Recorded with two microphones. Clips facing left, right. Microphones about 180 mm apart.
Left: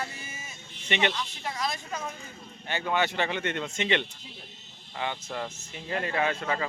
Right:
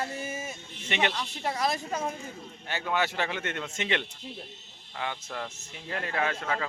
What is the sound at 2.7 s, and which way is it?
Speech, 5° right (ahead or behind).